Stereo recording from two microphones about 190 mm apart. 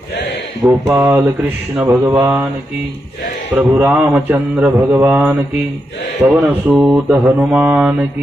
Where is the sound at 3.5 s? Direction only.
10° right (ahead or behind).